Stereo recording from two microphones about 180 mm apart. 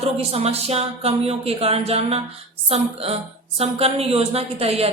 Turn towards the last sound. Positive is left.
turn(degrees=-35)  # may be behind; listen again after turning